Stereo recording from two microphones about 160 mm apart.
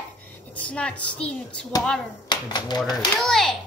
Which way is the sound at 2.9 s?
Centre (ahead or behind).